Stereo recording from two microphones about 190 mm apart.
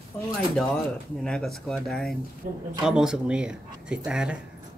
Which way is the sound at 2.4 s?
45° right (ahead or behind).